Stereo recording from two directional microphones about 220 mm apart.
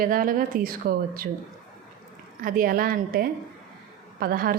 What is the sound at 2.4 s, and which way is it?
A woman's voice, 40° right (ahead or behind).